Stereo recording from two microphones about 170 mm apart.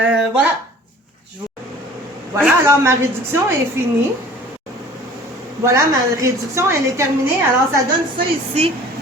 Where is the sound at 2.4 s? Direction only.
15° right (ahead or behind).